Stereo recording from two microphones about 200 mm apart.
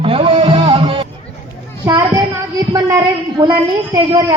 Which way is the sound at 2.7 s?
20° right (ahead or behind).